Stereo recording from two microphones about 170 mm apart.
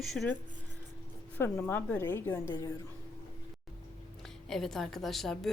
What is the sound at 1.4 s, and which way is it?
A woman's voice, 10° left (ahead or behind).